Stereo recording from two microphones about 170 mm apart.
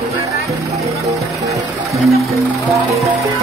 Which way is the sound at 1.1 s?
20° right (ahead or behind).